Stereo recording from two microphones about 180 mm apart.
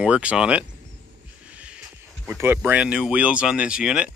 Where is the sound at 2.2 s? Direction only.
10° right (ahead or behind).